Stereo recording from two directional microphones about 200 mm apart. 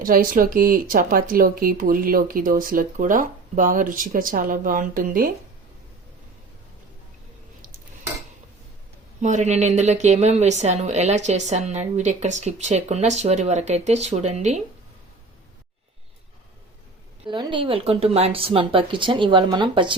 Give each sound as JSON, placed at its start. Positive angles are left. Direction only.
{"t": 0.0, "sound": "speech", "side_deg": -45}
{"t": 9.2, "sound": "a woman's voice", "side_deg": -35}
{"t": 17.2, "sound": "speech", "side_deg": -25}